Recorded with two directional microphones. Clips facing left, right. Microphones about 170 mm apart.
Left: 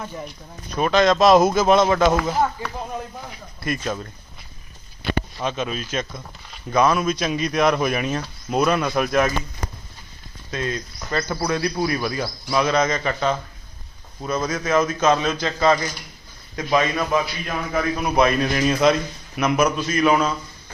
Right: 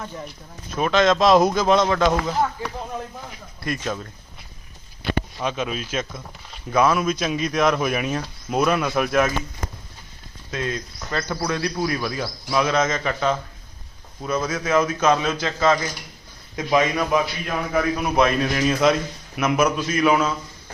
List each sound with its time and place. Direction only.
0.8 s speech: centre (ahead or behind)
3.6 s speech: centre (ahead or behind)
5.4 s a man's voice: 5° right (ahead or behind)
10.5 s speech: 5° right (ahead or behind)
14.4 s a man's voice: 10° right (ahead or behind)
16.6 s a man's voice: 15° right (ahead or behind)
17.4 s a man's voice: 5° right (ahead or behind)